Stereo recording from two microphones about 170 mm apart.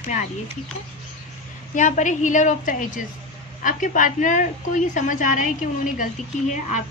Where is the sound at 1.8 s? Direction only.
45° left (ahead or behind).